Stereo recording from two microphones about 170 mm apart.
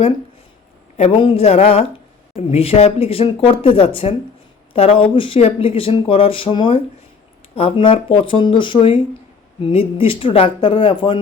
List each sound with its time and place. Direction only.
0.9 s speech: 35° left (ahead or behind)